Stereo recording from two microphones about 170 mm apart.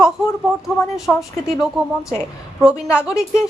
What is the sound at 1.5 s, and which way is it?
Speech, 5° right (ahead or behind).